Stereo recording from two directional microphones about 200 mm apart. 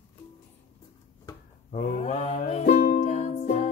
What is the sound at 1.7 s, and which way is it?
Music, 35° left (ahead or behind).